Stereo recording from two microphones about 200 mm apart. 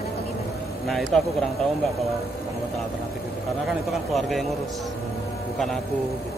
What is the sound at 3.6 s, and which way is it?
Speech, centre (ahead or behind).